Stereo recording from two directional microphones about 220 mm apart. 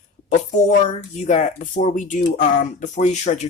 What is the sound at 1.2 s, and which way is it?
Speech, 30° left (ahead or behind).